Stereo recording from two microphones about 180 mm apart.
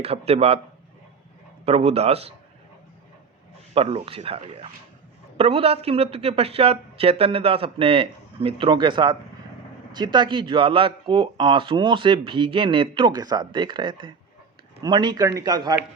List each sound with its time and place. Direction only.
0.0 s speech: 35° right (ahead or behind)
1.6 s speech: 35° right (ahead or behind)
3.8 s speech: 30° right (ahead or behind)